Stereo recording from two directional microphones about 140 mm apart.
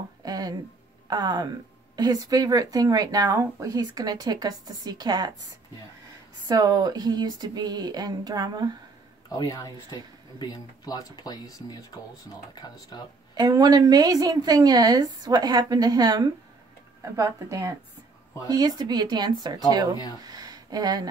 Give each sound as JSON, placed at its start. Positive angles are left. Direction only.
{"t": 0.2, "sound": "a sound", "side_deg": -25}
{"t": 1.0, "sound": "speech", "side_deg": -30}
{"t": 6.4, "sound": "speech", "side_deg": -30}
{"t": 9.3, "sound": "speech", "side_deg": 25}
{"t": 13.3, "sound": "speech", "side_deg": -30}